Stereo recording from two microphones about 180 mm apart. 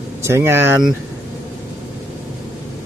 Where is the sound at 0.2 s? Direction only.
15° right (ahead or behind).